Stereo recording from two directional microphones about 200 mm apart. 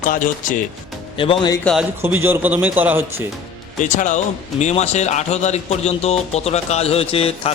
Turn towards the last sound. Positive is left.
turn(degrees=30)  # may be behind; listen again after turning